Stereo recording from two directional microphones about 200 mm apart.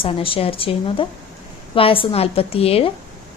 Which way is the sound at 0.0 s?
25° left (ahead or behind).